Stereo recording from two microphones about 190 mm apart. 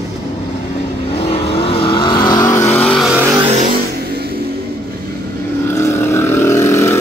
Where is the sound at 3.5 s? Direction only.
40° right (ahead or behind).